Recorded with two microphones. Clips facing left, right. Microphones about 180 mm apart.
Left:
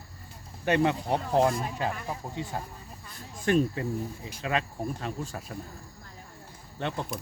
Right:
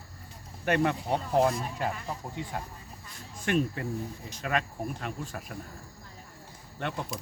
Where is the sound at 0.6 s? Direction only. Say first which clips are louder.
Left 2 dB; 25° left (ahead or behind).